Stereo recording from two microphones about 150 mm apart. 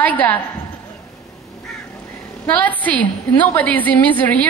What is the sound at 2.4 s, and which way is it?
A woman's voice, 10° left (ahead or behind).